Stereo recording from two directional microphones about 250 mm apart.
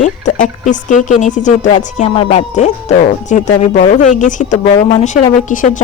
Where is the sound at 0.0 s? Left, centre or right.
Left.